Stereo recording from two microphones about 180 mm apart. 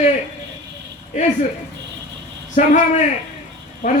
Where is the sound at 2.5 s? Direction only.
45° left (ahead or behind).